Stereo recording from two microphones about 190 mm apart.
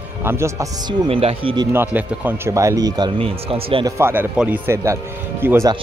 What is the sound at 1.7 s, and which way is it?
Speech, 10° right (ahead or behind).